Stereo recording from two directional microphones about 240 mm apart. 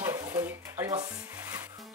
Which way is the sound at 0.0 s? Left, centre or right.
Centre.